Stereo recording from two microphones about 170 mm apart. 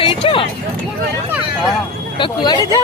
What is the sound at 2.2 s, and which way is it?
Speech, 25° left (ahead or behind).